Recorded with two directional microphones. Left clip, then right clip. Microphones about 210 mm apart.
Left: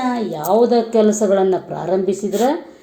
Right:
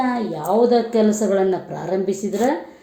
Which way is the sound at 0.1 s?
20° left (ahead or behind).